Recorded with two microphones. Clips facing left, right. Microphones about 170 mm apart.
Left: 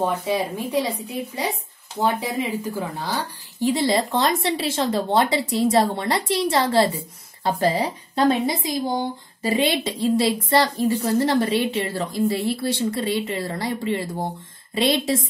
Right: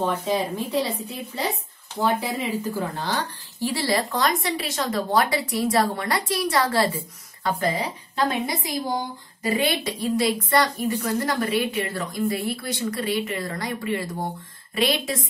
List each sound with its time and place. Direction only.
0.0 s a woman's voice: 10° left (ahead or behind); by 15.2 s 25° left (ahead or behind)